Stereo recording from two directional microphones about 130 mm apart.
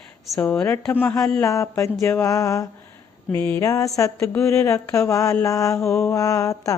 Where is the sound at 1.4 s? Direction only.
20° left (ahead or behind).